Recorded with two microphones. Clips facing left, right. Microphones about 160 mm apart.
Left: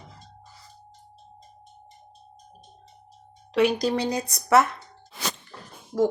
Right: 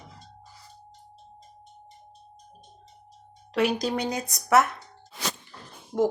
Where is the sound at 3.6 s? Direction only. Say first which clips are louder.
Left 3 dB; centre (ahead or behind).